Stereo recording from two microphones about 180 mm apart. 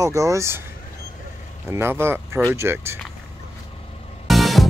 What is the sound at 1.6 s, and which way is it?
Speech, 15° right (ahead or behind).